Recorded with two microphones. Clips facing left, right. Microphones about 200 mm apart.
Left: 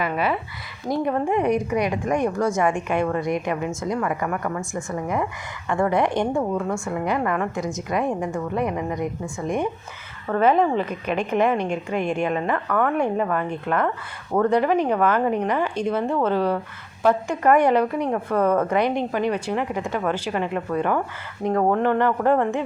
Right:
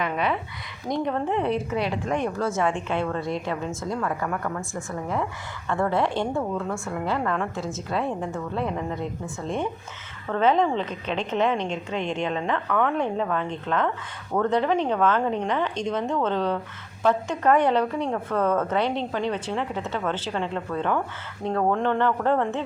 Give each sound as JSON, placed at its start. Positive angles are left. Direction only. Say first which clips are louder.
{"t": 0.0, "sound": "a woman's voice", "louder": "left 2 dB", "side_deg": 5}
{"t": 5.0, "sound": "a woman's voice", "louder": "left 3 dB", "side_deg": 15}